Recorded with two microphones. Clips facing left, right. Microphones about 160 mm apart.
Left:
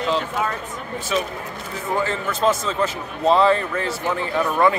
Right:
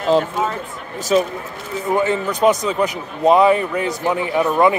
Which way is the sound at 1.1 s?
35° right (ahead or behind).